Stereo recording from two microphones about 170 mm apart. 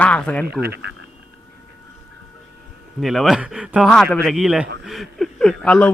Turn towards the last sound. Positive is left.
turn(degrees=5)  # may be behind; listen again after turning